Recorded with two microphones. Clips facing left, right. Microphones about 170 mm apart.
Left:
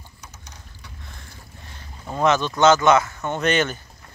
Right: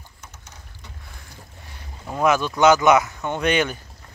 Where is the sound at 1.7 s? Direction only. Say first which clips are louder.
Even; 10° right (ahead or behind).